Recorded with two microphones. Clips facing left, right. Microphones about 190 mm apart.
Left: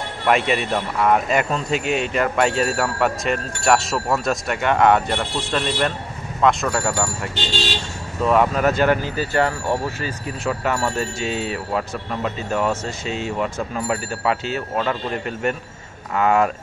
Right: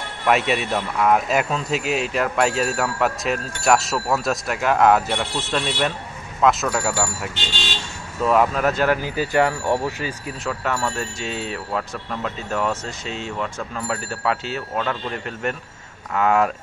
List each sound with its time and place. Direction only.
0.3 s a man's voice: centre (ahead or behind)
10.5 s a man's voice: 5° left (ahead or behind)